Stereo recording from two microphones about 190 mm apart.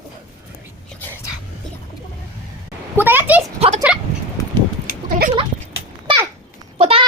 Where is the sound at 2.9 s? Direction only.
10° right (ahead or behind).